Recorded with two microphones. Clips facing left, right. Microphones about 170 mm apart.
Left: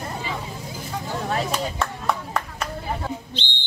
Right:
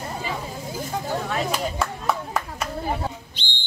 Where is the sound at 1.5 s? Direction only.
5° right (ahead or behind).